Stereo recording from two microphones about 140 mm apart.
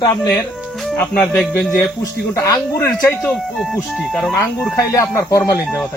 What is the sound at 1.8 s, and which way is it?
Speech, 20° left (ahead or behind).